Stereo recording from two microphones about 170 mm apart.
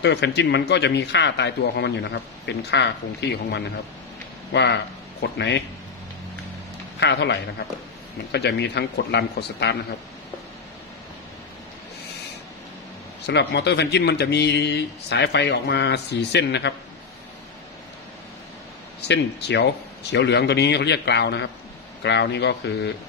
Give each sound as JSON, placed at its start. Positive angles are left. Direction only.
{"t": 0.0, "sound": "speech", "side_deg": 90}
{"t": 7.0, "sound": "speech", "side_deg": 90}
{"t": 13.3, "sound": "speech", "side_deg": 85}
{"t": 18.9, "sound": "speech", "side_deg": 85}